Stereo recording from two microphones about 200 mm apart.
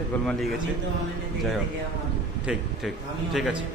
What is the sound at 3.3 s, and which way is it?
Speech, centre (ahead or behind).